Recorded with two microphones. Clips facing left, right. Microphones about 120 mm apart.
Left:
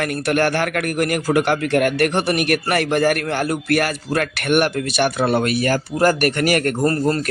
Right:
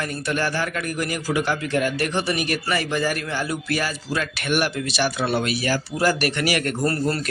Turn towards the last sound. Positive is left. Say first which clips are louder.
# left 4 dB
turn(degrees=40)  # may be behind; listen again after turning